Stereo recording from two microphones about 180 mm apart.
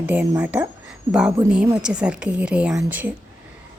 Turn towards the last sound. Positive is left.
turn(degrees=-10)  # may be behind; listen again after turning